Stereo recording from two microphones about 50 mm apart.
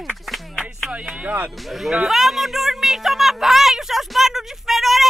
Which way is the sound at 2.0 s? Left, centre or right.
Centre.